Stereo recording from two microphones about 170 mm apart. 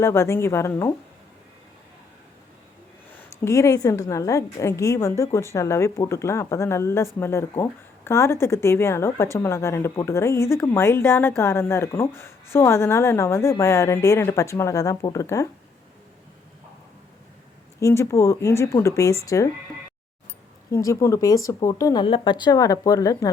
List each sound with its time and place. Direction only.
0.0 s speech: 15° left (ahead or behind)
3.1 s speech: 15° left (ahead or behind)
17.7 s speech: 15° left (ahead or behind)
20.7 s speech: 20° left (ahead or behind)